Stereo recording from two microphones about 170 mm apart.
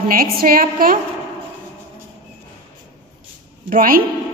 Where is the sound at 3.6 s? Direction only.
55° right (ahead or behind).